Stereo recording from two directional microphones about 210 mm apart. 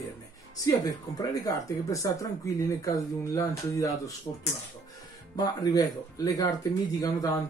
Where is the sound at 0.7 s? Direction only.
20° left (ahead or behind).